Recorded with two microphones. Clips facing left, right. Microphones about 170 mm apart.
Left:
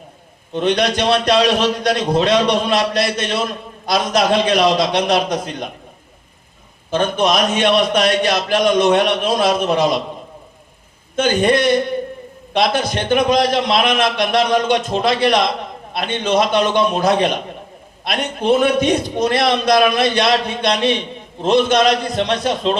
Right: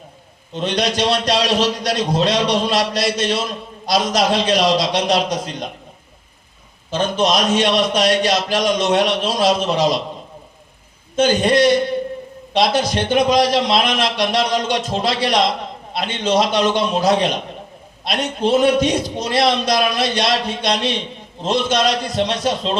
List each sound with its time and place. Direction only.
0.5 s a man's voice: 60° left (ahead or behind)
6.9 s a man's voice: 55° left (ahead or behind)
11.2 s a man's voice: 55° left (ahead or behind)